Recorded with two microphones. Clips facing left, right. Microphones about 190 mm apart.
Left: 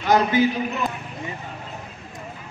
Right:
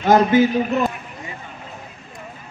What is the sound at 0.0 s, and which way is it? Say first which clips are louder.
Speech: right 5 dB; 45° right (ahead or behind).